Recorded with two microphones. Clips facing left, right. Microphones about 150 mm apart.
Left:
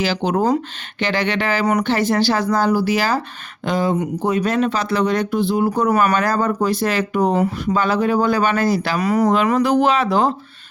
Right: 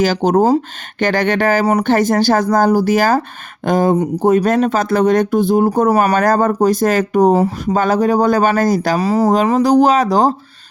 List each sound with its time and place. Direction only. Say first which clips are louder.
0.0 s speech: right 6 dB; 45° right (ahead or behind)
9.0 s speech: right 1 dB; 30° right (ahead or behind)